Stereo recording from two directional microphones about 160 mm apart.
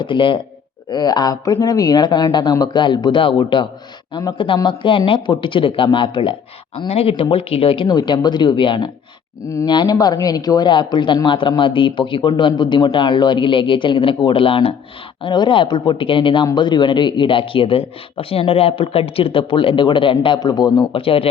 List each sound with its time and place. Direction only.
0.0 s a man's voice: 30° left (ahead or behind)